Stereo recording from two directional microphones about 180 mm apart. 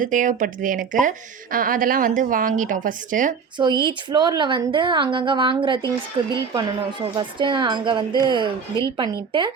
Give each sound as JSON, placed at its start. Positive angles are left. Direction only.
{"t": 0.0, "sound": "a woman's voice", "side_deg": -45}
{"t": 3.6, "sound": "a woman's voice", "side_deg": -25}